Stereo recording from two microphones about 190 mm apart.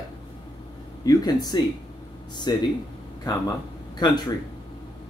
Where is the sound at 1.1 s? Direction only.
20° left (ahead or behind).